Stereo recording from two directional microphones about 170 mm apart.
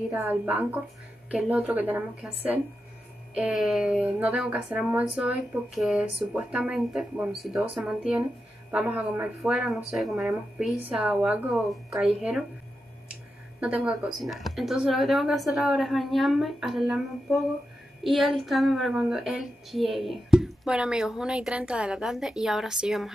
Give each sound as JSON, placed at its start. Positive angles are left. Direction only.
{"t": 0.1, "sound": "speech", "side_deg": -15}
{"t": 3.3, "sound": "a woman's voice", "side_deg": -5}
{"t": 13.6, "sound": "a woman's voice", "side_deg": -5}